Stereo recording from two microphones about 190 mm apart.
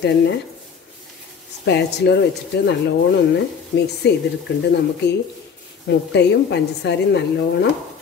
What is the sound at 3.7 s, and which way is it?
Speech, 60° left (ahead or behind).